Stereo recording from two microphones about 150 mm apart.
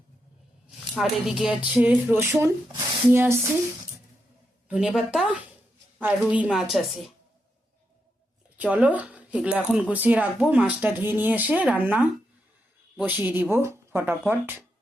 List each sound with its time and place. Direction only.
0.9 s speech: centre (ahead or behind)
4.7 s speech: 5° right (ahead or behind)
8.5 s speech: 10° right (ahead or behind)